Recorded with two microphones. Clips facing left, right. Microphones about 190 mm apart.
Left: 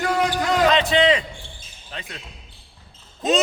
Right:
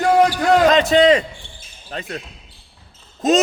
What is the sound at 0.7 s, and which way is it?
Speech, 45° right (ahead or behind).